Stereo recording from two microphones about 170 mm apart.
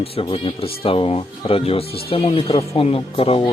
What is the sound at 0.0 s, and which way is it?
Speech, 35° left (ahead or behind).